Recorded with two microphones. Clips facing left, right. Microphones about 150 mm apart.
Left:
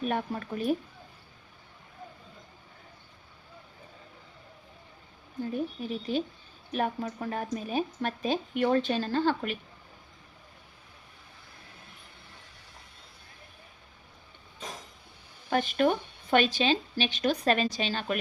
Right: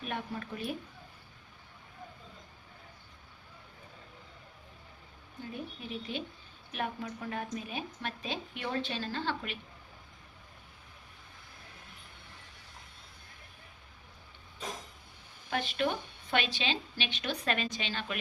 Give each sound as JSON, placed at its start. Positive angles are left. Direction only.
{"t": 0.0, "sound": "a woman's voice", "side_deg": 45}
{"t": 5.4, "sound": "a woman's voice", "side_deg": 40}
{"t": 15.4, "sound": "speech", "side_deg": 45}